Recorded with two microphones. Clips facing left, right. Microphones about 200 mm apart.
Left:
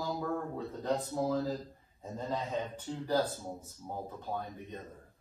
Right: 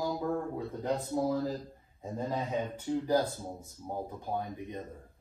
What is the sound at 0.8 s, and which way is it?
Speech, 15° right (ahead or behind).